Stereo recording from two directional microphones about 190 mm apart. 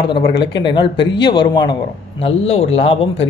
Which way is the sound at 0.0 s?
25° left (ahead or behind).